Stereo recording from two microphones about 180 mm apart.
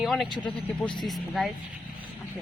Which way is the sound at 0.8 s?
Centre (ahead or behind).